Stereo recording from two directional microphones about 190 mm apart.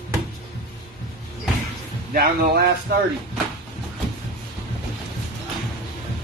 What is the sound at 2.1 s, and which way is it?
Speech, 55° right (ahead or behind).